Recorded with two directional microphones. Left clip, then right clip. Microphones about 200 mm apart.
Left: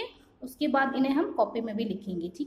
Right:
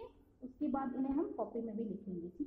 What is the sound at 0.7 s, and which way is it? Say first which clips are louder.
A woman's voice: left 13 dB; 30° left (ahead or behind).